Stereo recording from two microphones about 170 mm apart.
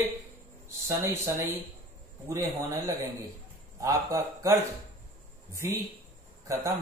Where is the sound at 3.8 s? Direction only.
20° right (ahead or behind).